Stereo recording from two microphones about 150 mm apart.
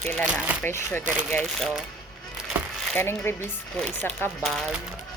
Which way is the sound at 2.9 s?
15° left (ahead or behind).